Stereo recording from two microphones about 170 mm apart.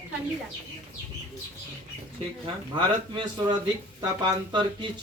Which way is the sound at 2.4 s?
30° right (ahead or behind).